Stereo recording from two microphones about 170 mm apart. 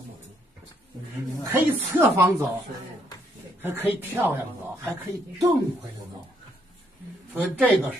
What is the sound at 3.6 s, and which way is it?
Speech, 10° right (ahead or behind).